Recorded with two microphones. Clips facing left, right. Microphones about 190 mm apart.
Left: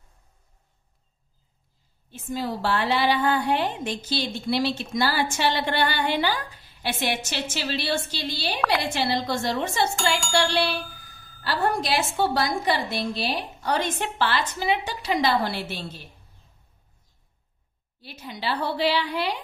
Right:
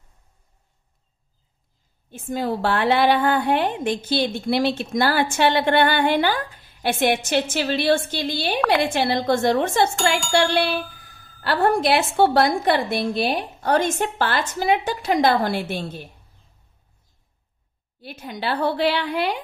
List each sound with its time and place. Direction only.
2.0 s a woman's voice: 50° right (ahead or behind)
9.9 s a sound: centre (ahead or behind)
11.4 s a woman's voice: 60° right (ahead or behind)
18.0 s a woman's voice: 55° right (ahead or behind)